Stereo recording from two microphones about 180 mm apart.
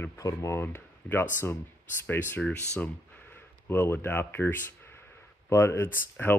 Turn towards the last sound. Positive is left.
turn(degrees=10)  # may be behind; listen again after turning